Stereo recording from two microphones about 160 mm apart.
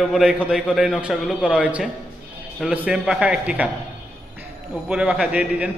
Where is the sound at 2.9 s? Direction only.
5° right (ahead or behind).